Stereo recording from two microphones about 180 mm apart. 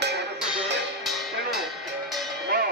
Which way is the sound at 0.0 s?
70° right (ahead or behind).